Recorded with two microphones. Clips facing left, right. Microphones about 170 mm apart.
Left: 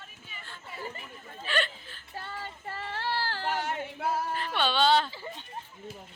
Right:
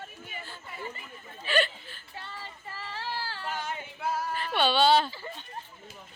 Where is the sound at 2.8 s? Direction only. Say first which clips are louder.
Left 4 dB; 65° left (ahead or behind).